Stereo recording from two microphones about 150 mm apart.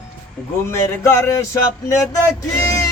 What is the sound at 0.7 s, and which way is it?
Speech, 15° left (ahead or behind).